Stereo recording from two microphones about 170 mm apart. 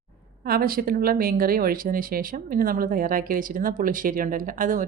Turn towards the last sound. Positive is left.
turn(degrees=-50)  # may be behind; listen again after turning